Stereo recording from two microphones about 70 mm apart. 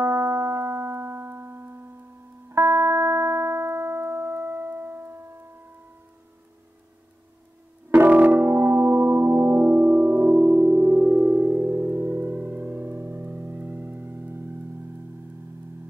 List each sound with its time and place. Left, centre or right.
0.0 s music: right
7.9 s music: right